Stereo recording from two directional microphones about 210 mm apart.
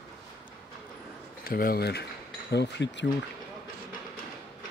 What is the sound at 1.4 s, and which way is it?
Speech, 45° left (ahead or behind).